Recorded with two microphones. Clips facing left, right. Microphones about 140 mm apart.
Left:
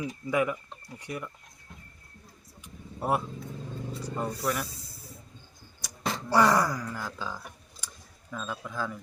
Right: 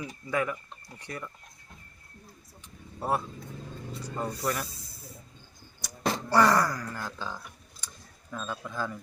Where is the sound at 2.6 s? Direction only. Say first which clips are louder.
Left 2 dB; 15° left (ahead or behind).